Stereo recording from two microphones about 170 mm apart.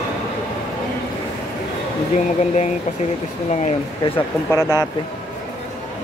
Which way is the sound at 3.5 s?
40° left (ahead or behind).